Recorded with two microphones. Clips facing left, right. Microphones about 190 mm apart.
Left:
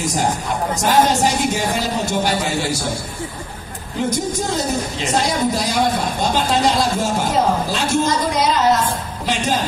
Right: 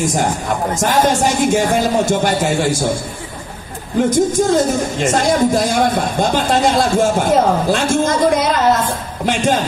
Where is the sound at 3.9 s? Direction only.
50° right (ahead or behind).